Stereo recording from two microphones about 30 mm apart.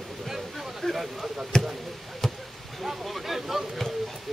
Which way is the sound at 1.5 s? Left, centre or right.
Centre.